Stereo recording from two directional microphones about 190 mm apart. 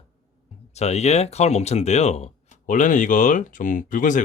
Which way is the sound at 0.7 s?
35° left (ahead or behind).